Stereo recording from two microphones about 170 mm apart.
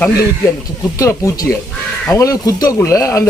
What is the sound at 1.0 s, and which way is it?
Speech, 20° left (ahead or behind).